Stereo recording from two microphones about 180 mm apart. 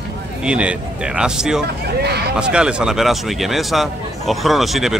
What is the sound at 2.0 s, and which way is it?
Speech, 65° right (ahead or behind).